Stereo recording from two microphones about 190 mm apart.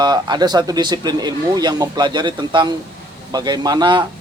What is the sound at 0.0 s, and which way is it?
Speech, 20° right (ahead or behind).